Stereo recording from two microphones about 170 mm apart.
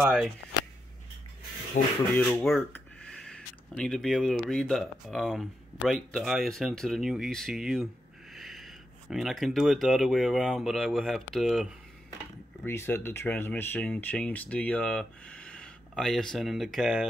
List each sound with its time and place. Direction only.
0.0 s speech: 5° right (ahead or behind)
1.8 s speech: 50° left (ahead or behind)
2.3 s speech: 5° left (ahead or behind)
12.6 s speech: 15° left (ahead or behind)